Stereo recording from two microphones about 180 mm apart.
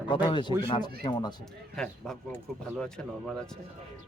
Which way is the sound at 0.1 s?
25° left (ahead or behind).